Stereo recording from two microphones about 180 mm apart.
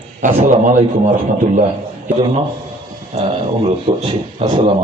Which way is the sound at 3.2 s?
30° right (ahead or behind).